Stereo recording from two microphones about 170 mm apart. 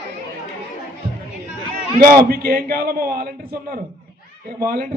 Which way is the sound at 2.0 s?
55° right (ahead or behind).